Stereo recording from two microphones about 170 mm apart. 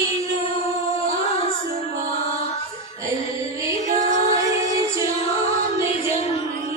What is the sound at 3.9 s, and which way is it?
Music, 45° right (ahead or behind).